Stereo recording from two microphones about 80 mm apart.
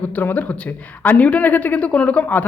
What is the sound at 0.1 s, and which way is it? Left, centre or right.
Speech, left.